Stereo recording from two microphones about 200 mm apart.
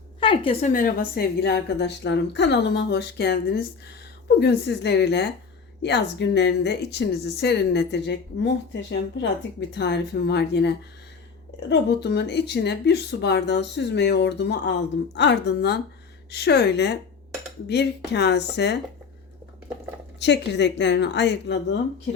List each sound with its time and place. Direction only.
0.2 s a woman's voice: 25° left (ahead or behind)
0.7 s speech: 45° left (ahead or behind)
11.7 s speech: 55° left (ahead or behind)
20.1 s speech: 60° left (ahead or behind)